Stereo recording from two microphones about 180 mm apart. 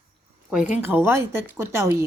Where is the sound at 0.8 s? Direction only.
15° right (ahead or behind).